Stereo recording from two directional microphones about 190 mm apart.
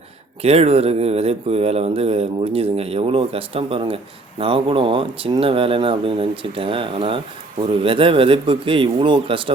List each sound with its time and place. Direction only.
0.4 s speech: 35° right (ahead or behind)